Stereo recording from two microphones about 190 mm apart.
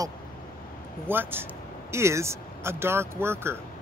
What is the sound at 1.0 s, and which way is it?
Speech, 10° right (ahead or behind).